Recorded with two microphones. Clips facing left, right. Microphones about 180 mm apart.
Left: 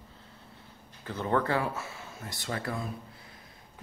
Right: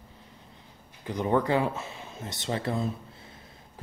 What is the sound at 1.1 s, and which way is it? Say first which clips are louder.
Speech: right 3 dB; 15° right (ahead or behind).